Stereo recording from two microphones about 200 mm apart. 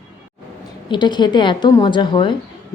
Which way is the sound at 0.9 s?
20° left (ahead or behind).